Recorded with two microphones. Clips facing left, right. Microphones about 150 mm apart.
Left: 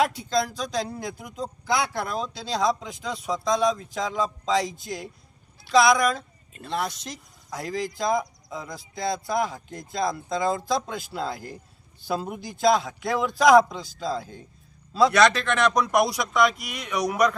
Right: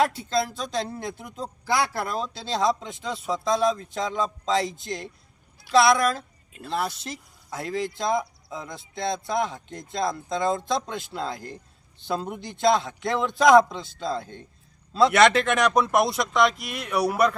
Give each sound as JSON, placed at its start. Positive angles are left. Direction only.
{"t": 0.0, "sound": "speech", "side_deg": 0}
{"t": 15.2, "sound": "speech", "side_deg": -60}
{"t": 15.4, "sound": "speech", "side_deg": -10}